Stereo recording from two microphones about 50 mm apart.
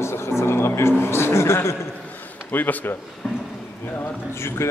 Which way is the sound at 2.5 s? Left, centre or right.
Left.